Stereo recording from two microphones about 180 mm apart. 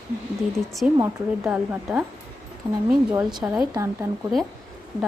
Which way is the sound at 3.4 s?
5° right (ahead or behind).